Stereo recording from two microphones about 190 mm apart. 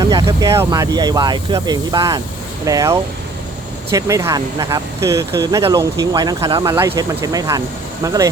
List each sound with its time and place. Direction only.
0.0 s speech: 20° right (ahead or behind)